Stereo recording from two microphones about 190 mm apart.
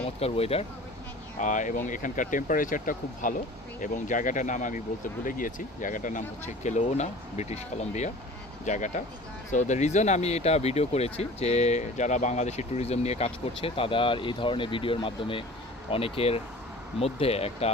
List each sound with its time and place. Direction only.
0.0 s speech: 30° left (ahead or behind)